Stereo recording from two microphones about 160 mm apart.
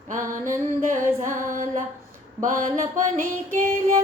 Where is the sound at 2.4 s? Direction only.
55° right (ahead or behind).